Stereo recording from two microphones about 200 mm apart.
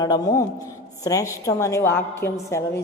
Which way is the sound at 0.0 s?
20° left (ahead or behind).